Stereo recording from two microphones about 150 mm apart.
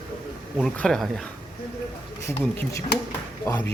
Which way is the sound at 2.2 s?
15° left (ahead or behind).